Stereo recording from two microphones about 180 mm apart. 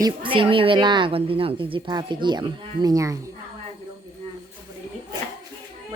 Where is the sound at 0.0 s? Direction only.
30° right (ahead or behind).